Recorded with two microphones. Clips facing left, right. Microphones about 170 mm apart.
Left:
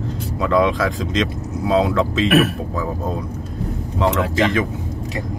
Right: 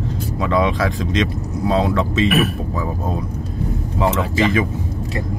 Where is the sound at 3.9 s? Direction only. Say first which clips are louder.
Left 1 dB; 5° right (ahead or behind).